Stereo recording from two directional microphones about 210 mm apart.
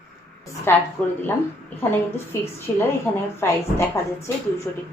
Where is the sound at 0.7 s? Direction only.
10° left (ahead or behind).